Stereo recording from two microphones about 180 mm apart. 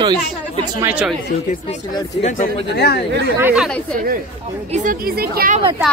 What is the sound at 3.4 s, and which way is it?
Speech, 5° right (ahead or behind).